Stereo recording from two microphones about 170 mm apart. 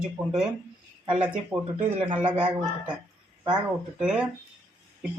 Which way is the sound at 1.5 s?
10° right (ahead or behind).